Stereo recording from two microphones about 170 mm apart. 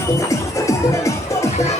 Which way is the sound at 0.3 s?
20° left (ahead or behind).